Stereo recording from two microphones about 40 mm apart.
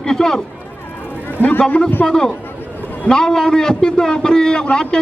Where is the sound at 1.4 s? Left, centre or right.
Left.